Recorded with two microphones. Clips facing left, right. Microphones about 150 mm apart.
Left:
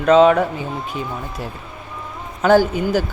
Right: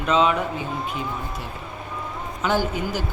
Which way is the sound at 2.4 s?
45° left (ahead or behind).